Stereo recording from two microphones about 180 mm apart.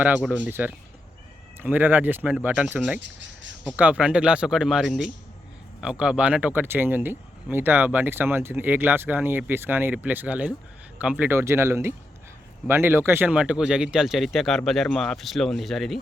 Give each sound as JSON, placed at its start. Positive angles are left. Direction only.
{"t": 0.0, "sound": "speech", "side_deg": -10}